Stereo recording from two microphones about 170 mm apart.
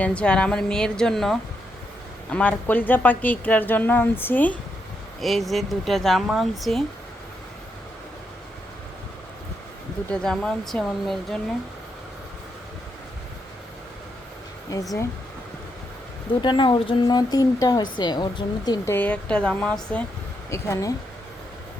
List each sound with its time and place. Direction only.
0.0 s a woman's voice: 5° left (ahead or behind)
5.2 s speech: centre (ahead or behind)
10.1 s speech: 5° left (ahead or behind)
14.7 s speech: 20° left (ahead or behind)
16.4 s speech: 30° left (ahead or behind)
18.9 s a woman's voice: 5° left (ahead or behind)
20.5 s a woman's voice: 20° left (ahead or behind)